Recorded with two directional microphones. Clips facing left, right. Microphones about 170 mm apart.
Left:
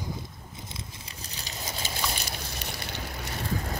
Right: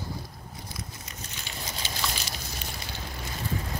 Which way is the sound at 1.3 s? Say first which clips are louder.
Left 2 dB; 40° left (ahead or behind).